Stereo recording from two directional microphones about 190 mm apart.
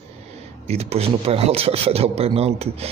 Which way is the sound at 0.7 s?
30° right (ahead or behind).